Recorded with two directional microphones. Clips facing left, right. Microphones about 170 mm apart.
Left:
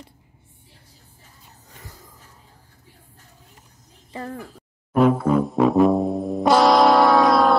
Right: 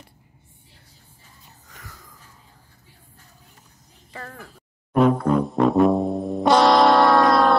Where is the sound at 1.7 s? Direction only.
25° left (ahead or behind).